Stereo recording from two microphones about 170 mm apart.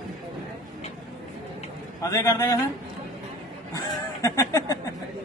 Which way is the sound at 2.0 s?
20° left (ahead or behind).